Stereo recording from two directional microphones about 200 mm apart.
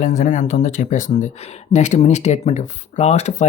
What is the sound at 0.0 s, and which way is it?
Speech, 40° left (ahead or behind).